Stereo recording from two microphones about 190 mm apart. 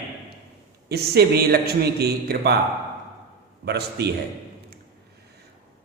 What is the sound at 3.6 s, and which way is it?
Speech, 60° right (ahead or behind).